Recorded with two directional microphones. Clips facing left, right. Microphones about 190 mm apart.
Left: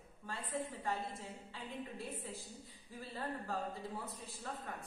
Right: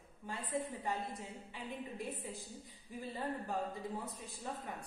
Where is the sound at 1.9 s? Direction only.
15° right (ahead or behind).